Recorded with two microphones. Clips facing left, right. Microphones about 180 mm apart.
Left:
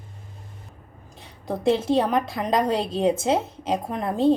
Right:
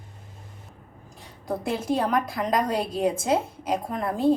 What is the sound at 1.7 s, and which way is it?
A woman's voice, 25° left (ahead or behind).